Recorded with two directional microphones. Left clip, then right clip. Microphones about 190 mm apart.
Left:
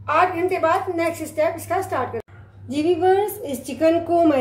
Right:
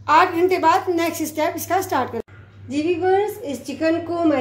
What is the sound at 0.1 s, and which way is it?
A woman's voice, 45° right (ahead or behind).